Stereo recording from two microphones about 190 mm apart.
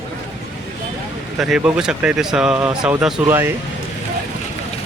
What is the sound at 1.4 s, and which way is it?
Speech, 5° right (ahead or behind).